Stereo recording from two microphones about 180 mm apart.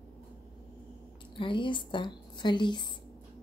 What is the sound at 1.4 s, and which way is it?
A woman's voice, 25° left (ahead or behind).